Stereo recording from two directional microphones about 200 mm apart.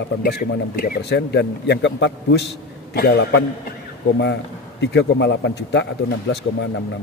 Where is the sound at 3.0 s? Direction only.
55° left (ahead or behind).